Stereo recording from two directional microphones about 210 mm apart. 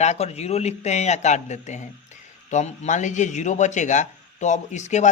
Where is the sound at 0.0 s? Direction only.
30° left (ahead or behind).